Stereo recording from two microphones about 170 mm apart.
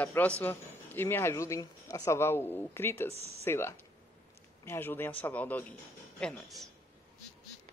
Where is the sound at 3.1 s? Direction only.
35° right (ahead or behind).